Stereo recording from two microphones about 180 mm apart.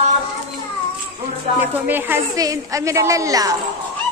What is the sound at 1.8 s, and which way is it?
A woman's voice, 10° right (ahead or behind).